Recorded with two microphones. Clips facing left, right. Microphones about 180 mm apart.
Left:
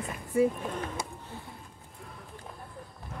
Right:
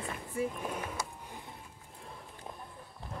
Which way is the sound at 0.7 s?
10° right (ahead or behind).